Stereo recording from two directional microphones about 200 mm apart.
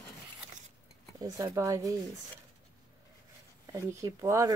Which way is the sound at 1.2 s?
15° right (ahead or behind).